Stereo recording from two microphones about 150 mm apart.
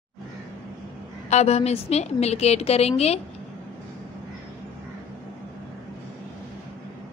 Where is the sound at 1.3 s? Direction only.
45° left (ahead or behind).